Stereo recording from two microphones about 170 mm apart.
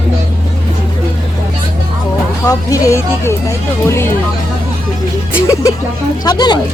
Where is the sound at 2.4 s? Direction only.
20° left (ahead or behind).